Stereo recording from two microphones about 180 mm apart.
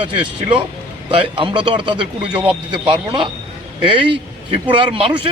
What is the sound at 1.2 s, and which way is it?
A man's voice, 30° right (ahead or behind).